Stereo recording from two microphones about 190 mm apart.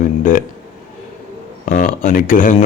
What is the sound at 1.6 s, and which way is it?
Speech, 45° left (ahead or behind).